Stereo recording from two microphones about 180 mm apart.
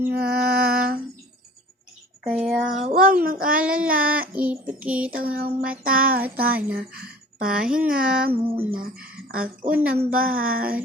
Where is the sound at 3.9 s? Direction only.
55° right (ahead or behind).